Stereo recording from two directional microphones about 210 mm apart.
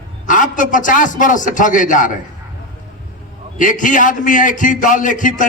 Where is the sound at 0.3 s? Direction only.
40° left (ahead or behind).